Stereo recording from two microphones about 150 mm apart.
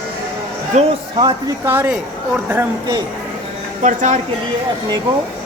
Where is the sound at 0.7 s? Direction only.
45° right (ahead or behind).